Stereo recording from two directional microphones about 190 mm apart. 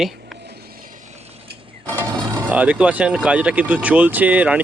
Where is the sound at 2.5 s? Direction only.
5° right (ahead or behind).